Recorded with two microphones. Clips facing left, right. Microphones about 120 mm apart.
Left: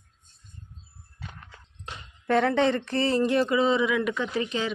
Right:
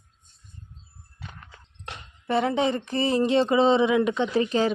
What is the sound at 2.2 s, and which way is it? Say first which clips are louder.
Speech: left 1 dB; 10° right (ahead or behind).